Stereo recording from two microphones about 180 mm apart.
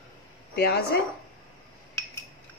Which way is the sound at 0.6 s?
60° left (ahead or behind).